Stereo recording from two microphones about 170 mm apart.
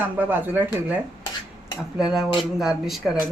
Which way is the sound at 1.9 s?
5° right (ahead or behind).